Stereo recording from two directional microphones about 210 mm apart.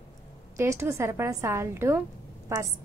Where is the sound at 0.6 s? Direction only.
15° right (ahead or behind).